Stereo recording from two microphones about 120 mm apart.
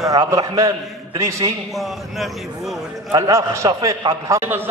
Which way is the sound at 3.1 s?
30° right (ahead or behind).